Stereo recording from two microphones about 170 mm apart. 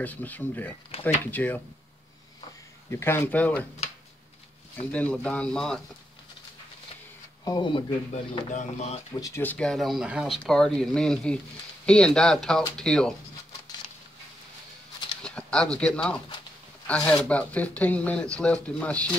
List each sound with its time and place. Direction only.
0.0 s speech: 10° left (ahead or behind)
2.9 s speech: 15° left (ahead or behind)
4.9 s speech: 5° left (ahead or behind)
7.4 s speech: 25° left (ahead or behind)
8.1 s speech: 40° left (ahead or behind)
9.2 s speech: 15° left (ahead or behind)
15.2 s speech: 5° left (ahead or behind)